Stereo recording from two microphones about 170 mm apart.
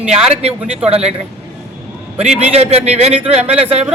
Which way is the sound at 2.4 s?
35° right (ahead or behind).